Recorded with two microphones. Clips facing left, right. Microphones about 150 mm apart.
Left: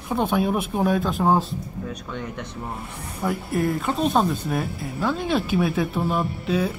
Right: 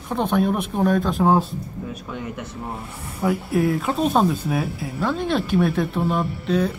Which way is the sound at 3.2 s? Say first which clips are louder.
Right 3 dB; centre (ahead or behind).